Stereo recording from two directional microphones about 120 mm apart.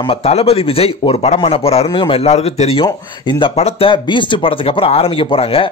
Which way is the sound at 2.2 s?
65° left (ahead or behind).